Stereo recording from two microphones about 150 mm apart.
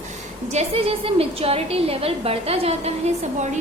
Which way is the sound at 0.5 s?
40° right (ahead or behind).